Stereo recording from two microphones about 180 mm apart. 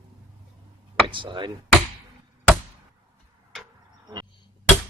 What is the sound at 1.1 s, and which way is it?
Speech, 25° right (ahead or behind).